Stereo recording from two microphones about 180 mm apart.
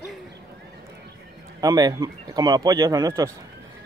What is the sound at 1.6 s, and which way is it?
Speech, 20° right (ahead or behind).